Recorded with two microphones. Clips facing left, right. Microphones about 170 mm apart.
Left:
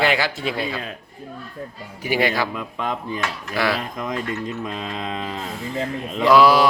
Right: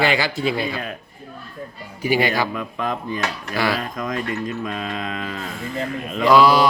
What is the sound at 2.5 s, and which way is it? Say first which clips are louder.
Speech: right 1 dB; 20° left (ahead or behind).